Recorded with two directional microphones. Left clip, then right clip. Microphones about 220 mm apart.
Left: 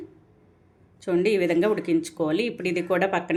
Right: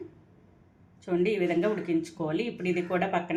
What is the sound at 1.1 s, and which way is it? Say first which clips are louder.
A woman's voice: left 5 dB; 50° left (ahead or behind).